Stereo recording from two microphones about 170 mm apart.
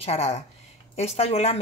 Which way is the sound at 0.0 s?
40° left (ahead or behind).